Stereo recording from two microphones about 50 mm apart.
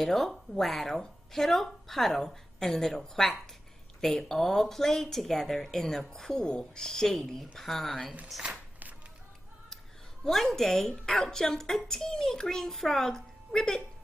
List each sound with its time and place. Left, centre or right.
0.0 s speech: centre
10.2 s speech: centre